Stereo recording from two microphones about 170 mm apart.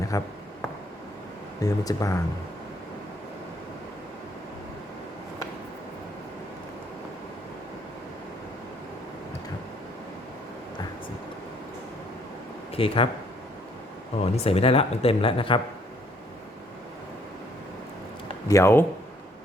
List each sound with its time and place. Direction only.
0.1 s speech: 20° left (ahead or behind)
1.6 s speech: 20° left (ahead or behind)
12.7 s speech: 35° left (ahead or behind)
14.2 s speech: 35° left (ahead or behind)
18.4 s speech: 15° left (ahead or behind)